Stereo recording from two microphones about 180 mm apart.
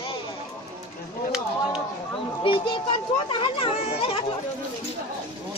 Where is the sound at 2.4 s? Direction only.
30° left (ahead or behind).